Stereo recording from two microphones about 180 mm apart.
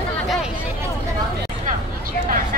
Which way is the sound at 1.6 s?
50° right (ahead or behind).